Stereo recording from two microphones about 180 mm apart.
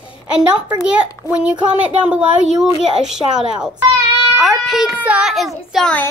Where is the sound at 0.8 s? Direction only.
5° right (ahead or behind).